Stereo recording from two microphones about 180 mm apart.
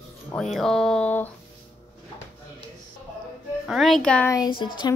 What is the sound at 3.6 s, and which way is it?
Speech, centre (ahead or behind).